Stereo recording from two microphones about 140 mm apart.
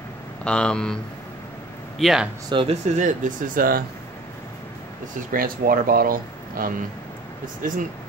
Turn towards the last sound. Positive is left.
turn(degrees=-70)  # may be behind; listen again after turning